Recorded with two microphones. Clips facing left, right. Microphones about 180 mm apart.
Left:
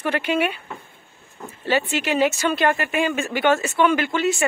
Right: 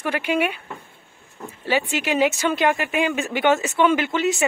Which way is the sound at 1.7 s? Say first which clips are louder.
Left 1 dB; 15° right (ahead or behind).